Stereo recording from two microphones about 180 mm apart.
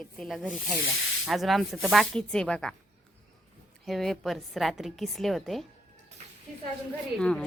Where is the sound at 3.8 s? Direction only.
Centre (ahead or behind).